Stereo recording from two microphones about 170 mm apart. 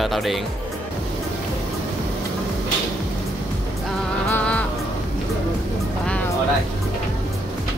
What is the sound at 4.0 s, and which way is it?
Music, 10° left (ahead or behind).